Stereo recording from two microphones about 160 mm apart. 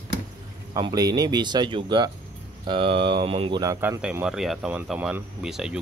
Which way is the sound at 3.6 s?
20° right (ahead or behind).